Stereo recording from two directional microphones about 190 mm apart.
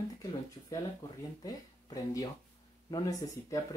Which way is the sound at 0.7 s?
20° left (ahead or behind).